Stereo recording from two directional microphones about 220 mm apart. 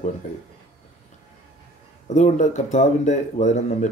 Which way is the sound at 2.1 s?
30° left (ahead or behind).